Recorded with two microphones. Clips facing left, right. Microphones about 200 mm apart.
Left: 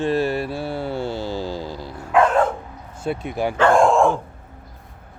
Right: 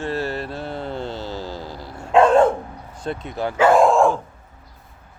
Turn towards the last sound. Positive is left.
turn(degrees=0)  # may be behind; listen again after turning